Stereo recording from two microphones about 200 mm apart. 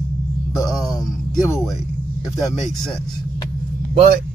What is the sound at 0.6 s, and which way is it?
Speech, centre (ahead or behind).